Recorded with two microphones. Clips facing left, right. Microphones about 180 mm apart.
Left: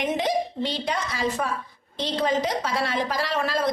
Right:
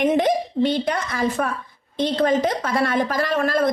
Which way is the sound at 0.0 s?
55° right (ahead or behind).